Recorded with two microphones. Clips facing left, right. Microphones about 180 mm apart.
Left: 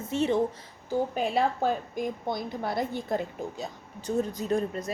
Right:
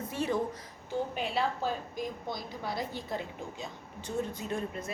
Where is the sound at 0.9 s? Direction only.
45° left (ahead or behind).